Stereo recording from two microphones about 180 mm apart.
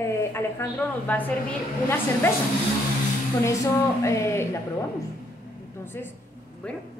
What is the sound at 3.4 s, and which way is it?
A woman's voice, 15° left (ahead or behind).